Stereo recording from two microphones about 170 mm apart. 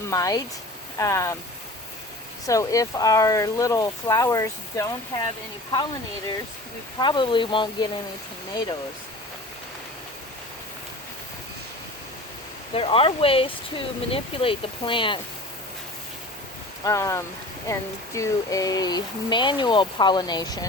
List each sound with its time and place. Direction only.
0.1 s speech: 20° left (ahead or behind)
2.5 s speech: 20° left (ahead or behind)
7.0 s speech: 30° left (ahead or behind)
12.7 s speech: 35° left (ahead or behind)
16.8 s speech: 20° left (ahead or behind)